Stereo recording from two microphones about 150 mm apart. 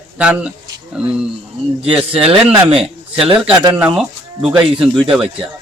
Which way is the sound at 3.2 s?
35° right (ahead or behind).